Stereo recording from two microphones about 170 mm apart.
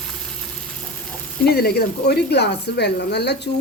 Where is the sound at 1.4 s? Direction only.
65° left (ahead or behind).